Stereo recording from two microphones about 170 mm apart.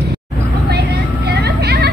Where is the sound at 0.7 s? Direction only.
75° right (ahead or behind).